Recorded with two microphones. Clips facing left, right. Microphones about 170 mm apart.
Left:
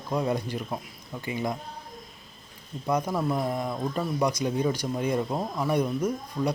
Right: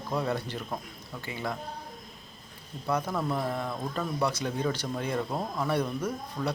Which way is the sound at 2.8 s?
15° left (ahead or behind).